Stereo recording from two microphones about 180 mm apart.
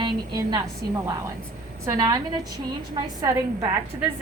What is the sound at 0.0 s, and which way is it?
Speech, 25° right (ahead or behind).